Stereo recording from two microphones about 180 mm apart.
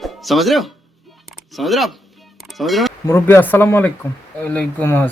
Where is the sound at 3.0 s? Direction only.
15° left (ahead or behind).